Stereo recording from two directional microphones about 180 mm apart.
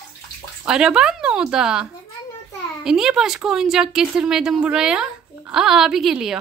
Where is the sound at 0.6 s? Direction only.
5° right (ahead or behind).